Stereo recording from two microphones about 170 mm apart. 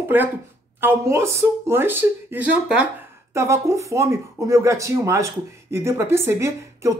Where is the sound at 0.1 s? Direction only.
10° right (ahead or behind).